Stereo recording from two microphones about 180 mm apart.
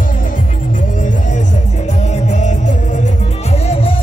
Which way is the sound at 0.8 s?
45° left (ahead or behind).